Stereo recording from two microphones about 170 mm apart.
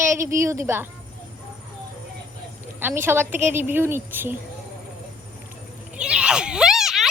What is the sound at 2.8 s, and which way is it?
A child's voice, 10° right (ahead or behind).